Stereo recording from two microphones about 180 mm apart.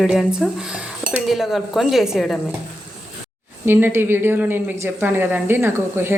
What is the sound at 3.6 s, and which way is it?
Speech, 10° right (ahead or behind).